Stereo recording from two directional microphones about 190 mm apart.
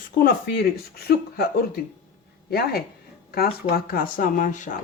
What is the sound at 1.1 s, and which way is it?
Speech, 60° left (ahead or behind).